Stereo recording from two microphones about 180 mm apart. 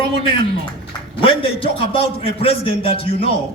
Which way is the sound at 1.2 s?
30° left (ahead or behind).